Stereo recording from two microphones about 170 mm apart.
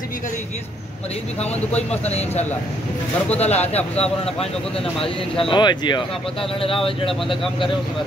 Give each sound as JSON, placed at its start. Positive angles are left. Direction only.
{"t": 2.0, "sound": "speech", "side_deg": 40}
{"t": 5.4, "sound": "speech", "side_deg": 30}